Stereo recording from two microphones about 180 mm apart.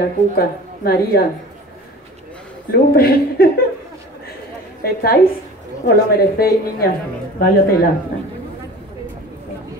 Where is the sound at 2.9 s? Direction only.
55° left (ahead or behind).